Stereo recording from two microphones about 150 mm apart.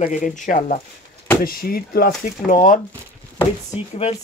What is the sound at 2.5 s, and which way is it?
Speech, 60° left (ahead or behind).